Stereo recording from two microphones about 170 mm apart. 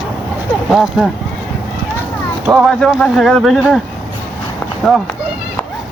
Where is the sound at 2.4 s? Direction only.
Centre (ahead or behind).